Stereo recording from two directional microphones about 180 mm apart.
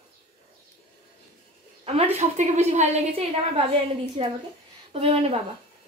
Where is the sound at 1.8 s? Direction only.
35° right (ahead or behind).